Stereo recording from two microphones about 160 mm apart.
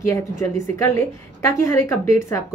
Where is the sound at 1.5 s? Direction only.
15° left (ahead or behind).